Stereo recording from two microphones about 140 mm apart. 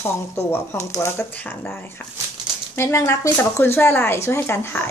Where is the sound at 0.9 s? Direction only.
15° left (ahead or behind).